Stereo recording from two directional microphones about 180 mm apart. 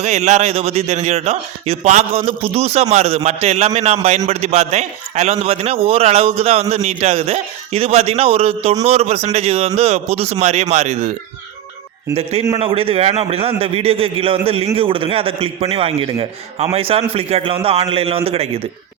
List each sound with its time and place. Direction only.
0.0 s a man's voice: 40° right (ahead or behind)
12.1 s a man's voice: 35° right (ahead or behind)